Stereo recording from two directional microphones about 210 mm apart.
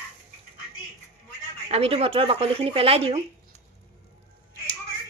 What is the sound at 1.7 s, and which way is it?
Speech, 30° right (ahead or behind).